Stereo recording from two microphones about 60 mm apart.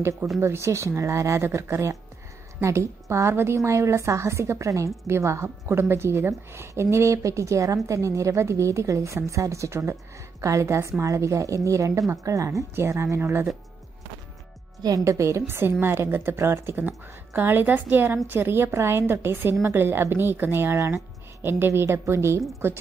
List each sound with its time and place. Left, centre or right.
0.4 s a woman's voice: right
13.2 s a woman's voice: right
14.8 s a woman's voice: right
15.1 s a woman's voice: right